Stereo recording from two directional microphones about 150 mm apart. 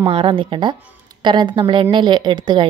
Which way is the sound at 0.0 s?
35° right (ahead or behind).